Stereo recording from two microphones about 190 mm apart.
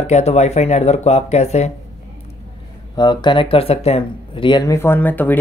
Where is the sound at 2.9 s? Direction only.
25° left (ahead or behind).